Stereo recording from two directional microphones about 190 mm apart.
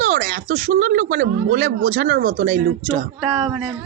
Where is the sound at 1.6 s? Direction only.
90° right.